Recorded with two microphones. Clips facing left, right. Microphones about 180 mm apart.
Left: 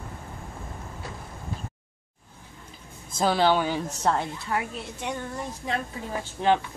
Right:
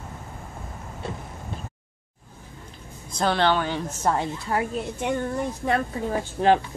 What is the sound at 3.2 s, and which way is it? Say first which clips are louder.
Speech: even; 5° left (ahead or behind).